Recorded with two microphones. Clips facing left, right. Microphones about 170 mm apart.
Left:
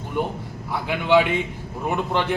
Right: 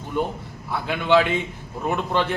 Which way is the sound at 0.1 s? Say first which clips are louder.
Even; 15° left (ahead or behind).